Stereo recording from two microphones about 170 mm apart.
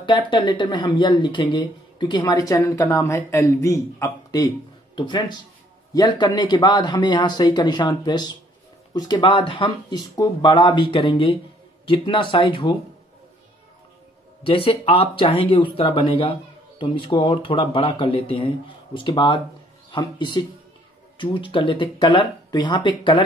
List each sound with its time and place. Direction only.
0.0 s speech: 30° left (ahead or behind)
14.4 s speech: 30° left (ahead or behind)